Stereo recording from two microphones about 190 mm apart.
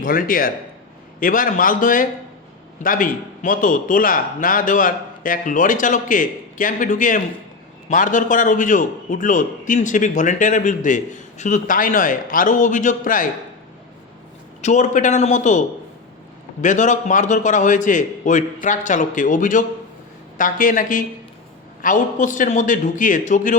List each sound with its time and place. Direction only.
0.0 s a man's voice: 45° left (ahead or behind)
14.6 s a man's voice: 40° left (ahead or behind)